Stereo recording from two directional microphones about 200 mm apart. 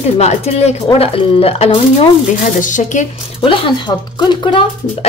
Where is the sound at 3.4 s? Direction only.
25° left (ahead or behind).